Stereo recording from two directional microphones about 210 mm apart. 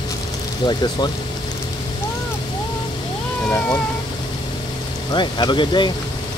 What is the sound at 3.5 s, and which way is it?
Speech, 5° left (ahead or behind).